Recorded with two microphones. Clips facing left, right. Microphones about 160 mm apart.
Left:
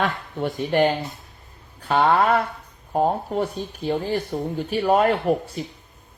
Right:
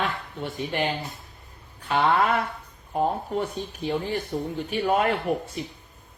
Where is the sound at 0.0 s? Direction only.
45° left (ahead or behind).